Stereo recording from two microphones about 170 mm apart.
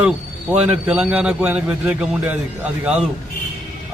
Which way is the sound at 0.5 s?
10° right (ahead or behind).